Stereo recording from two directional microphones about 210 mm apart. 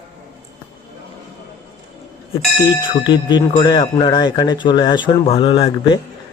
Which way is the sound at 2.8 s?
20° left (ahead or behind).